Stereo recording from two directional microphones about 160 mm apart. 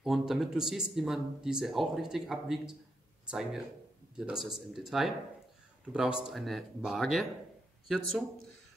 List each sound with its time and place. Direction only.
0.0 s speech: centre (ahead or behind)
4.2 s speech: 5° right (ahead or behind)